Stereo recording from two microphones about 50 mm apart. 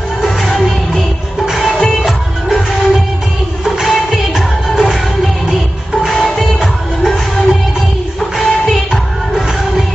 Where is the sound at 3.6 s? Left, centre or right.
Centre.